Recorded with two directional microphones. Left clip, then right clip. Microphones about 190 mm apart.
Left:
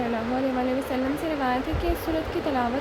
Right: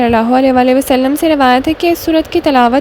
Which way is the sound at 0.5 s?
65° right (ahead or behind).